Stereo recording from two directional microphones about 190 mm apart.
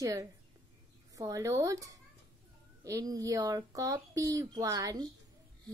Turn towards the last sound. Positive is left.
turn(degrees=-20)  # may be behind; listen again after turning